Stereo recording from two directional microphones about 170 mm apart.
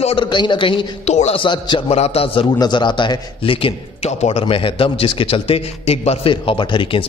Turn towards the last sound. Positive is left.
turn(degrees=30)  # may be behind; listen again after turning